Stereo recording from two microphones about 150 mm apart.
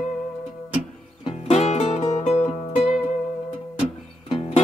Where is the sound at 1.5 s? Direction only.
45° left (ahead or behind).